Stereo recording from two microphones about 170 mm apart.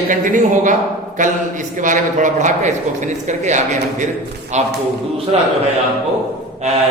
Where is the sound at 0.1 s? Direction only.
50° right (ahead or behind).